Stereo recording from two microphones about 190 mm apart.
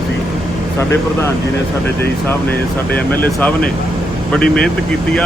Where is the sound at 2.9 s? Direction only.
10° left (ahead or behind).